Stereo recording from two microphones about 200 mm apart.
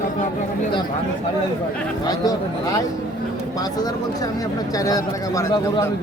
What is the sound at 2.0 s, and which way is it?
Speech, 20° left (ahead or behind).